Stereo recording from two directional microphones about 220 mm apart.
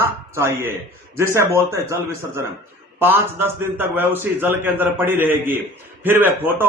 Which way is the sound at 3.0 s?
10° right (ahead or behind).